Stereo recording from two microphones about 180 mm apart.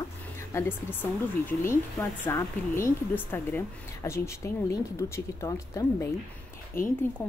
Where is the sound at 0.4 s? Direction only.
15° left (ahead or behind).